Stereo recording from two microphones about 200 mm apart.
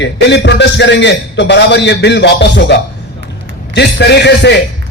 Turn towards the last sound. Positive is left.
turn(degrees=55)  # may be behind; listen again after turning